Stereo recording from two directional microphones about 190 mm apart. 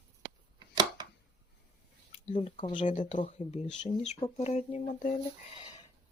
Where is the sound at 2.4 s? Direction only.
25° left (ahead or behind).